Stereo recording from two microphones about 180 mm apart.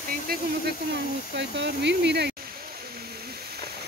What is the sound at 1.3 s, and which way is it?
Speech, 75° right (ahead or behind).